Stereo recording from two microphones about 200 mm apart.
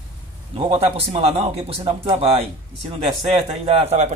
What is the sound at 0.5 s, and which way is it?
Speech, 30° right (ahead or behind).